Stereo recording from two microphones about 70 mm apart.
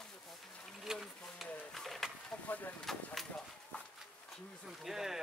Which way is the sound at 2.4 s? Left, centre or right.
Left.